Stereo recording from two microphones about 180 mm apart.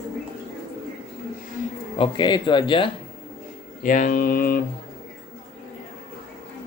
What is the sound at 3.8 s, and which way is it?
Speech, 45° left (ahead or behind).